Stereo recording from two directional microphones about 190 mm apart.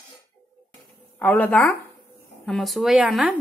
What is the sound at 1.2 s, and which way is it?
A woman's voice, 10° left (ahead or behind).